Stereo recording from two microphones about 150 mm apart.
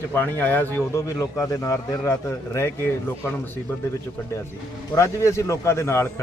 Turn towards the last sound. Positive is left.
turn(degrees=20)  # may be behind; listen again after turning